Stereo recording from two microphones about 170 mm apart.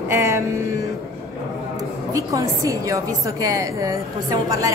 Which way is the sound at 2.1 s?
20° right (ahead or behind).